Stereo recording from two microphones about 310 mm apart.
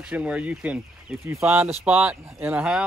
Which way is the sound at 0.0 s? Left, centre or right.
Centre.